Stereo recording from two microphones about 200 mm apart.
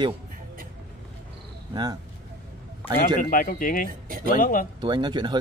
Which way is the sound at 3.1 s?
45° left (ahead or behind).